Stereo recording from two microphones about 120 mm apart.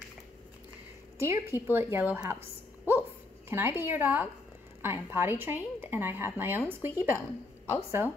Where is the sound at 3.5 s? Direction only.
20° right (ahead or behind).